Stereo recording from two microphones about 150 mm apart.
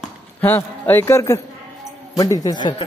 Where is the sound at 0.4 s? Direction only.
15° left (ahead or behind).